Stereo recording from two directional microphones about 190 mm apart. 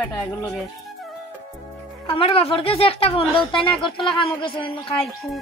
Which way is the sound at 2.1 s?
30° left (ahead or behind).